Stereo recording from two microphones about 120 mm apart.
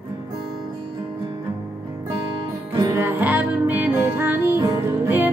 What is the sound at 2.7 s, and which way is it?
Music, 30° right (ahead or behind).